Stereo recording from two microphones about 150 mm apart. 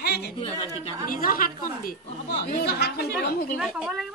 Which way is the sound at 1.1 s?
70° left (ahead or behind).